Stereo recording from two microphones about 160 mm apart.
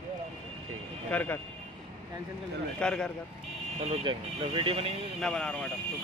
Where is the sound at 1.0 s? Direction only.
10° left (ahead or behind).